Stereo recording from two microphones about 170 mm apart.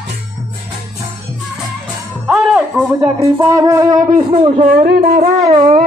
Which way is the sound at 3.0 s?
20° right (ahead or behind).